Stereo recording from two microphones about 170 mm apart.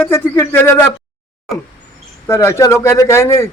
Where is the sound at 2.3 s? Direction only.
15° left (ahead or behind).